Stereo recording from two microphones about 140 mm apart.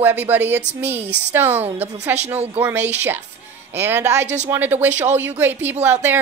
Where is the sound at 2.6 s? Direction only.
15° right (ahead or behind).